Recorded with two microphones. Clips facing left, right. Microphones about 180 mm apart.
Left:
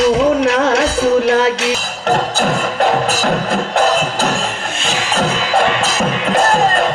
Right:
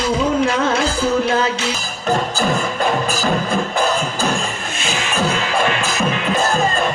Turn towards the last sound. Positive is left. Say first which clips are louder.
# left 4 dB
turn(degrees=70)  # may be behind; listen again after turning